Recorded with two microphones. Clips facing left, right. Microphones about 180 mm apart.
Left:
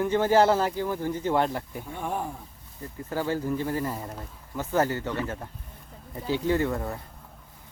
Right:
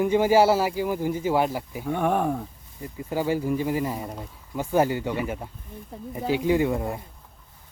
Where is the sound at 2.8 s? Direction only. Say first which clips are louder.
Right 3 dB; 10° right (ahead or behind).